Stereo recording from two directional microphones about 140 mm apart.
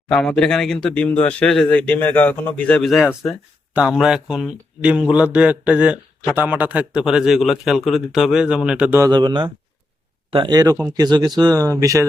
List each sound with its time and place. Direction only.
0.1 s a man's voice: 5° left (ahead or behind)
9.0 s speech: 30° right (ahead or behind)